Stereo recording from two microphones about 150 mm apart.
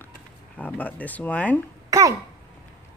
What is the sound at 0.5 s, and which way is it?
Speech, 10° left (ahead or behind).